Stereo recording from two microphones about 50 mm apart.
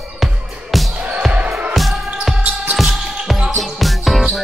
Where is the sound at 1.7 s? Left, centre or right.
Centre.